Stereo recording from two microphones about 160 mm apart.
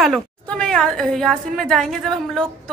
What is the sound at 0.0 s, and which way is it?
A woman's voice, 5° left (ahead or behind).